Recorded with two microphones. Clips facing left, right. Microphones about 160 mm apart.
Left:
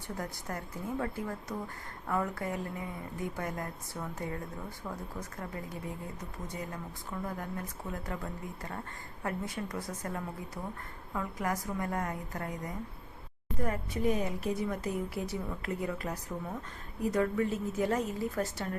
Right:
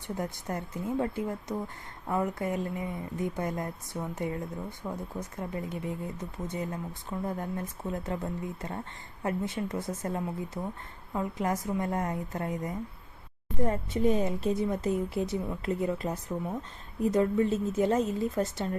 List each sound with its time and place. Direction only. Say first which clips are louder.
0.2 s speech: right 5 dB; 20° right (ahead or behind)